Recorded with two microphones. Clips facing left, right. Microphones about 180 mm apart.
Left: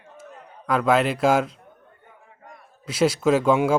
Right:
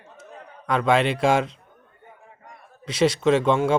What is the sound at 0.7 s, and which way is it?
Speech, 5° left (ahead or behind).